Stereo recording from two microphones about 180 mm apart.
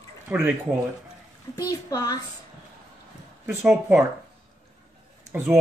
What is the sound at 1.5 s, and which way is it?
Speech, 20° left (ahead or behind).